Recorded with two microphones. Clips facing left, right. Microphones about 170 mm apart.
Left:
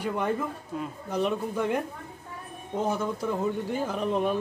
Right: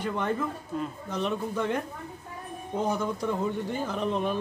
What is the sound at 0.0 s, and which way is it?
Speech, 10° left (ahead or behind).